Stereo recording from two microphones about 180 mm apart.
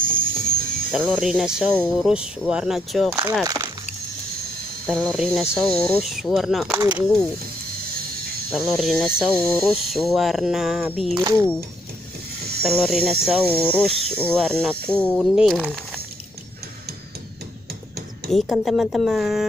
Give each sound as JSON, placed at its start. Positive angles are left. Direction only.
{"t": 0.0, "sound": "music", "side_deg": -55}
{"t": 0.9, "sound": "speech", "side_deg": -5}
{"t": 3.4, "sound": "a sound", "side_deg": -15}
{"t": 4.8, "sound": "speech", "side_deg": 5}
{"t": 8.5, "sound": "speech", "side_deg": 0}
{"t": 12.6, "sound": "speech", "side_deg": 0}
{"t": 18.3, "sound": "speech", "side_deg": 0}